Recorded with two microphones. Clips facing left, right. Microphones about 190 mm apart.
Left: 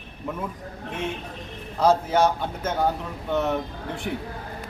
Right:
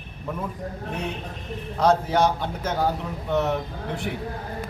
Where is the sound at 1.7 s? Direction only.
Centre (ahead or behind).